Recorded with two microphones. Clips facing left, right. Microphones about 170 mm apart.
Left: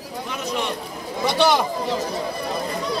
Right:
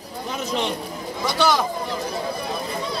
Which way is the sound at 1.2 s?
25° left (ahead or behind).